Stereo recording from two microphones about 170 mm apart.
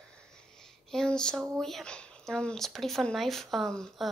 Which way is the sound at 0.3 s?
5° left (ahead or behind).